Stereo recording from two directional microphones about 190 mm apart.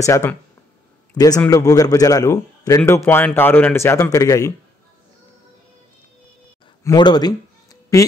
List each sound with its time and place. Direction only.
0.0 s a man's voice: 15° left (ahead or behind)
6.8 s speech: 20° left (ahead or behind)